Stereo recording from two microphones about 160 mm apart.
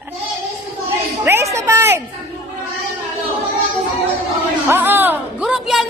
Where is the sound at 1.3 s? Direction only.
15° right (ahead or behind).